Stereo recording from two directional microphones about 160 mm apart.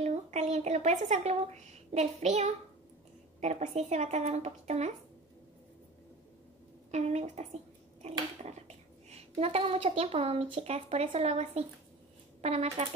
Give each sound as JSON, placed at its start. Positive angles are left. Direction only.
{"t": 0.0, "sound": "a woman's voice", "side_deg": -45}
{"t": 6.9, "sound": "a woman's voice", "side_deg": -45}